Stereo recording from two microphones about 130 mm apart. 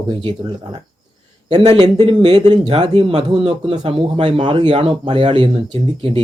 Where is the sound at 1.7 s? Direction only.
35° right (ahead or behind).